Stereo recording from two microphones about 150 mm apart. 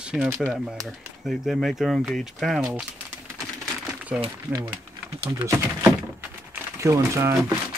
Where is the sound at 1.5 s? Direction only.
Centre (ahead or behind).